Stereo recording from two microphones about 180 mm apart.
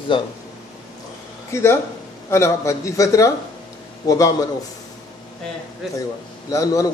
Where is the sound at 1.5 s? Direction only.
15° left (ahead or behind).